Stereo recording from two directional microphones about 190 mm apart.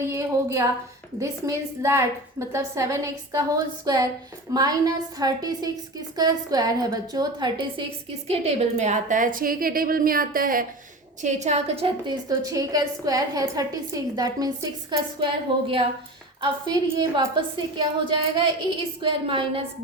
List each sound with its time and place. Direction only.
0.1 s a woman's voice: 15° right (ahead or behind)
8.3 s a woman's voice: 35° right (ahead or behind)
12.3 s a woman's voice: 20° right (ahead or behind)